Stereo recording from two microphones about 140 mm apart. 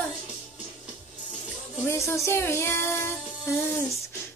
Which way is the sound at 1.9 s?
20° left (ahead or behind).